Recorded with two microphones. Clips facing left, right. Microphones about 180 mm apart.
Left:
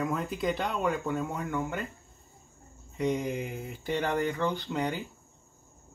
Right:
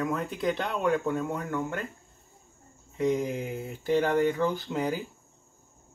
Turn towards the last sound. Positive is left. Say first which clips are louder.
# right 2 dB
turn(degrees=-5)  # may be behind; listen again after turning